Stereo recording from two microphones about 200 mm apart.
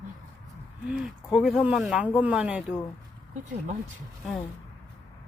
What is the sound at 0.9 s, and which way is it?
Speech, centre (ahead or behind).